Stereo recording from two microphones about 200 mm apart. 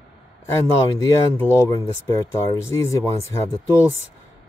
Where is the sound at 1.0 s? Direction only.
15° left (ahead or behind).